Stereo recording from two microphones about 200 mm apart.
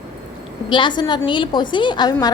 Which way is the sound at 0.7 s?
25° left (ahead or behind).